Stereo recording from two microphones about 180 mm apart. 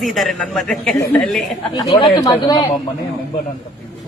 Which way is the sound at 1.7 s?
25° left (ahead or behind).